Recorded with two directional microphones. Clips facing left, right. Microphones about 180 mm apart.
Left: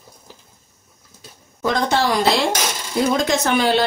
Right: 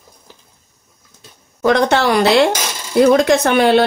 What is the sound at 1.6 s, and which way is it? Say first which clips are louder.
Speech: right 6 dB; 70° right (ahead or behind).